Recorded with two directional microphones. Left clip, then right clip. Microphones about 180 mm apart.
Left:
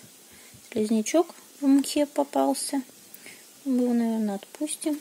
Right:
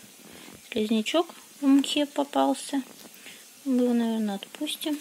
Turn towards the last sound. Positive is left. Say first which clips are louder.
# left 1 dB
turn(degrees=10)  # may be behind; listen again after turning